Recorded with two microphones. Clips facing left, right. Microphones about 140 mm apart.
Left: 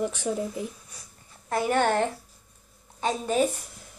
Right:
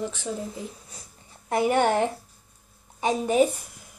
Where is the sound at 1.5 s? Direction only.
15° right (ahead or behind).